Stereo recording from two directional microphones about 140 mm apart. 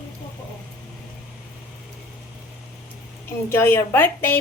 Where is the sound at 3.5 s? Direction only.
15° left (ahead or behind).